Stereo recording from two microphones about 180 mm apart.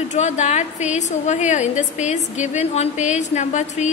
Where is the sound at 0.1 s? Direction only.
40° left (ahead or behind).